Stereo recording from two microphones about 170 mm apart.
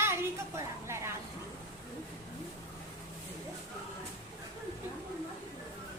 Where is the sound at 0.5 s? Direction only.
20° right (ahead or behind).